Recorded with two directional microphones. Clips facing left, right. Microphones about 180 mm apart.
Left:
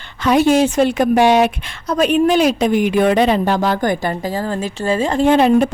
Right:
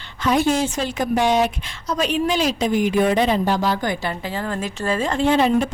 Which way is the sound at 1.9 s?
55° left (ahead or behind).